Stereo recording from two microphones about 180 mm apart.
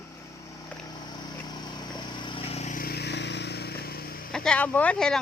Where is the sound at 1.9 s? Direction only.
25° left (ahead or behind); by 4.2 s 55° left (ahead or behind).